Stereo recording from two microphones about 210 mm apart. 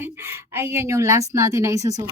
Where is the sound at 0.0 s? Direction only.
10° right (ahead or behind).